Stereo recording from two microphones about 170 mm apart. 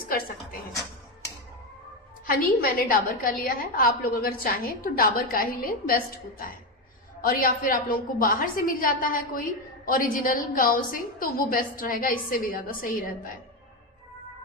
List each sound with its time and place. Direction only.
2.2 s a woman's voice: 60° left (ahead or behind)
7.2 s a woman's voice: 55° left (ahead or behind)